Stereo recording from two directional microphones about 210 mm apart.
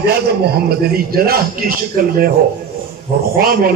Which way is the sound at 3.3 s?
45° right (ahead or behind).